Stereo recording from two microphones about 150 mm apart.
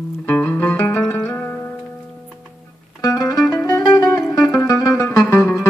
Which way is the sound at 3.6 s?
20° left (ahead or behind).